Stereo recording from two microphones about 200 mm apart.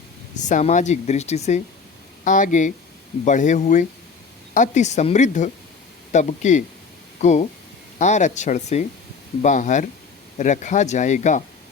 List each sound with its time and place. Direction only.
0.3 s speech: 40° left (ahead or behind)